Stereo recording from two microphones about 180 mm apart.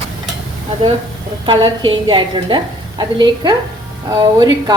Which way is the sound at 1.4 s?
25° right (ahead or behind).